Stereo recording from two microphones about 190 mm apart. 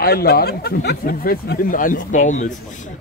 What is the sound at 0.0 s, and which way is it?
Speech, 55° left (ahead or behind).